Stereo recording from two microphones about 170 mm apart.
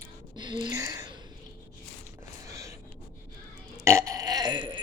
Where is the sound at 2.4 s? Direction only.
20° right (ahead or behind).